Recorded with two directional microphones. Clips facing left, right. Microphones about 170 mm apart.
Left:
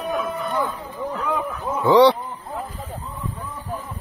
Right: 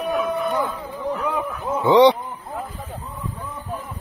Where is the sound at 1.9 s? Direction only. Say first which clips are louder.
Even; 20° right (ahead or behind).